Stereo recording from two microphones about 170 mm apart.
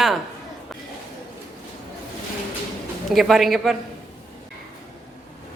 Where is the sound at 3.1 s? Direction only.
Centre (ahead or behind).